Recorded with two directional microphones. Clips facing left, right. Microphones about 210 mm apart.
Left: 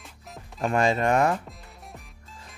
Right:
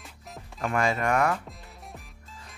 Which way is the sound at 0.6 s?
25° left (ahead or behind).